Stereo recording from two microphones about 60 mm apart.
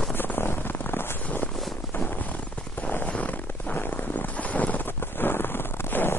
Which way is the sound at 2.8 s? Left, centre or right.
Left.